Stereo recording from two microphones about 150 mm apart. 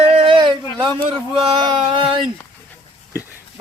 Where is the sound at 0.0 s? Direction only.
35° right (ahead or behind).